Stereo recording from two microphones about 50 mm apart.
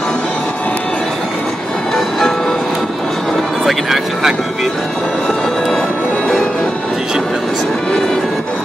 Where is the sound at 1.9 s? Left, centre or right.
Centre.